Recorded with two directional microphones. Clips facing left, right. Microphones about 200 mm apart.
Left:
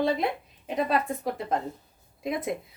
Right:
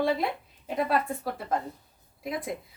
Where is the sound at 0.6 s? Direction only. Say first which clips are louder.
Left 1 dB; 20° left (ahead or behind).